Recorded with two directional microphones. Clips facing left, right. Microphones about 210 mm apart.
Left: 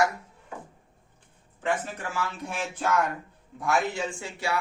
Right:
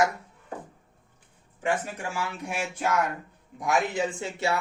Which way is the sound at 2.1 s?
10° right (ahead or behind).